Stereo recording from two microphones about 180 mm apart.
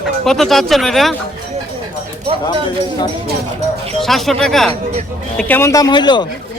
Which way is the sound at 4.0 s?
Centre (ahead or behind).